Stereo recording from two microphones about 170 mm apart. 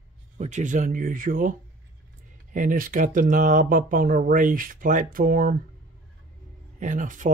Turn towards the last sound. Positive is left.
turn(degrees=-50)  # may be behind; listen again after turning